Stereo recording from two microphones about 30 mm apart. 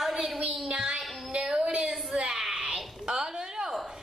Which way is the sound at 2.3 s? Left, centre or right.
Centre.